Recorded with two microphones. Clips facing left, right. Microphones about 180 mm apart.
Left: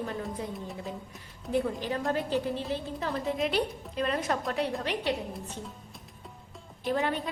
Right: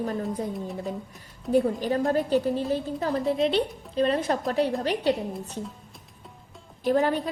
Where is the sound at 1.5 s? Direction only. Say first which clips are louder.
Right 6 dB; 40° right (ahead or behind).